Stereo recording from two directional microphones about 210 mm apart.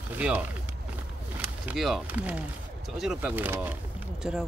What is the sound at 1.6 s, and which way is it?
A man's voice, centre (ahead or behind).